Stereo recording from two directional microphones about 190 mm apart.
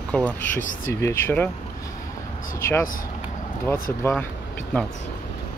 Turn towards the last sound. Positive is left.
turn(degrees=5)  # may be behind; listen again after turning